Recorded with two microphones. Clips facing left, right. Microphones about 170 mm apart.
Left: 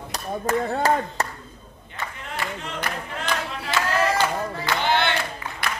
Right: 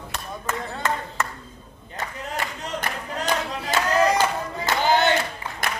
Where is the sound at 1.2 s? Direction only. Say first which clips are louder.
Left 1 dB; 35° left (ahead or behind).